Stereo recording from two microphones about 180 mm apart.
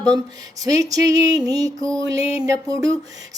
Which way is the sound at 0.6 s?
20° right (ahead or behind).